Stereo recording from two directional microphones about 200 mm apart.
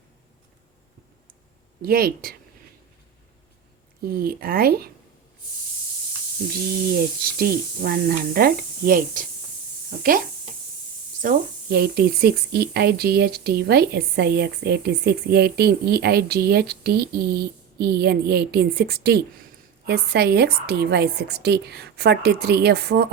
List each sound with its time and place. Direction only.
1.8 s speech: 50° right (ahead or behind)
4.0 s speech: 50° right (ahead or behind)
6.9 s speech: 50° right (ahead or behind)